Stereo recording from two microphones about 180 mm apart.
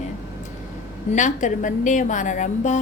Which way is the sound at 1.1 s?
45° left (ahead or behind).